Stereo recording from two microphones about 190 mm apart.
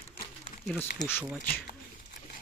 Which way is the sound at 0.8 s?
10° left (ahead or behind).